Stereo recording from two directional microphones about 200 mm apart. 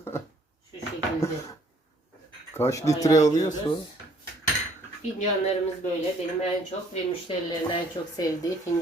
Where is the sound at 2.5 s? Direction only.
15° left (ahead or behind).